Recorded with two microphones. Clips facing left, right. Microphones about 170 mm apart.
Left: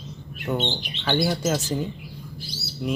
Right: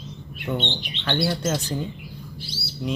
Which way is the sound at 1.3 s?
5° left (ahead or behind).